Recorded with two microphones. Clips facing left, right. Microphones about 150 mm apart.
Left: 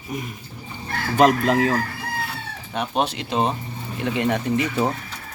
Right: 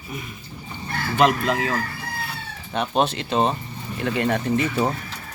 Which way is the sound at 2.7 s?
10° left (ahead or behind).